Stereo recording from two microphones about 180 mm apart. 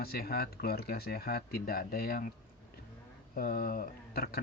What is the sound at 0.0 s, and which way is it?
Speech, 60° left (ahead or behind).